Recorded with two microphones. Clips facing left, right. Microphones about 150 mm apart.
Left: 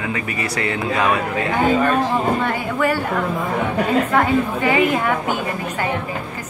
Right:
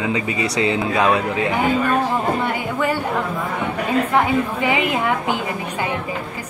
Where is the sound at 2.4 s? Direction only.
15° right (ahead or behind).